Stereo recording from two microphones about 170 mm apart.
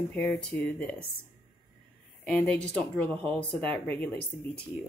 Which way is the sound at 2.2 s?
5° left (ahead or behind).